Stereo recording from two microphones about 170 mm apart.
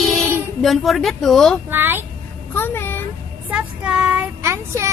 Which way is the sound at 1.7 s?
10° right (ahead or behind).